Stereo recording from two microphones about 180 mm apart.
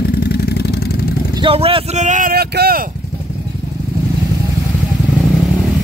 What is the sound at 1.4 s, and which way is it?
Vehicle, 30° right (ahead or behind).